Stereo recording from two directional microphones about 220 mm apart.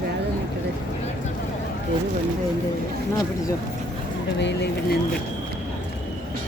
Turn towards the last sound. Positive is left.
turn(degrees=50)  # may be behind; listen again after turning